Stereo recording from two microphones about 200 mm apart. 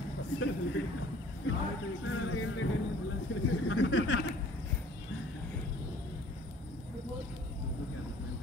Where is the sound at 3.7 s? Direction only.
75° left (ahead or behind).